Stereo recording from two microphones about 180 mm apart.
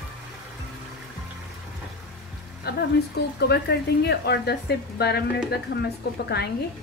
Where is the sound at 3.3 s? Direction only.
65° left (ahead or behind).